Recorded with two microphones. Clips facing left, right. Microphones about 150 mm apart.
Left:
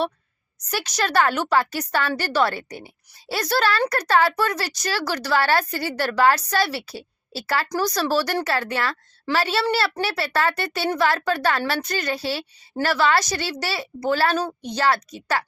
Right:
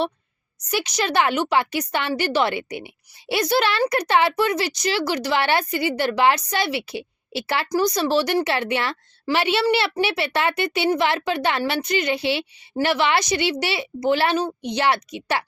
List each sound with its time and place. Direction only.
0.7 s a woman's voice: 15° right (ahead or behind)